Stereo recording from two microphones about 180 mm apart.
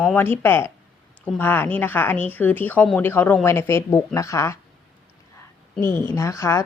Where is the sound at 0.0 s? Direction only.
10° left (ahead or behind).